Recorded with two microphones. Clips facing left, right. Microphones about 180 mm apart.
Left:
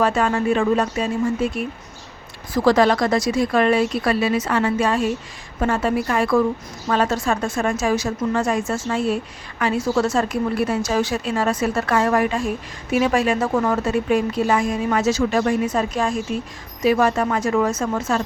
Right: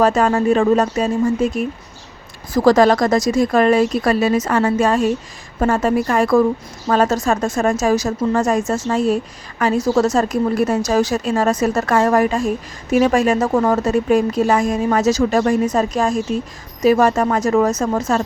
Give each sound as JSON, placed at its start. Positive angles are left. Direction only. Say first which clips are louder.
{"t": 0.0, "sound": "a woman's voice", "louder": "right 4 dB", "side_deg": -40}